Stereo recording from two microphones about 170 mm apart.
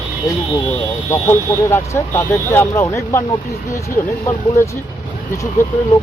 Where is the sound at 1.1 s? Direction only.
15° left (ahead or behind).